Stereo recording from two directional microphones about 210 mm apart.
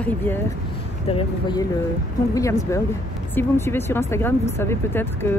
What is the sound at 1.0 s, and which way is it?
Speech, 25° left (ahead or behind).